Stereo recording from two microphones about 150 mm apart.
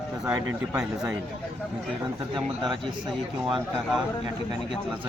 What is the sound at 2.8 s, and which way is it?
Speech, 30° right (ahead or behind).